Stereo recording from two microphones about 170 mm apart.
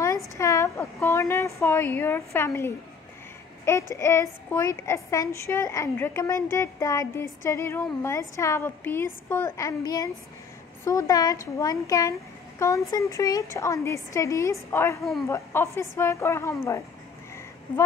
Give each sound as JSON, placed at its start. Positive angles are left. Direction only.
{"t": 0.4, "sound": "a woman's voice", "side_deg": 15}
{"t": 3.9, "sound": "a woman's voice", "side_deg": 15}